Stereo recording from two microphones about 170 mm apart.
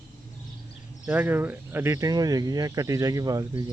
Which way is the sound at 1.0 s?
10° right (ahead or behind).